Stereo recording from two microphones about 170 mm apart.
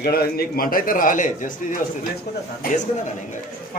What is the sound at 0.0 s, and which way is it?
A man's voice, 65° left (ahead or behind).